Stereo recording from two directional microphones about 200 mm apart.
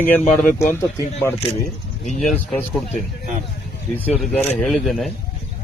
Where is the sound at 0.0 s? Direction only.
10° left (ahead or behind).